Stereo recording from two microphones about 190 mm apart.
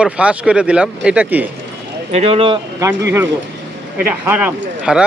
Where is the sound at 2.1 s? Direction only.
35° right (ahead or behind).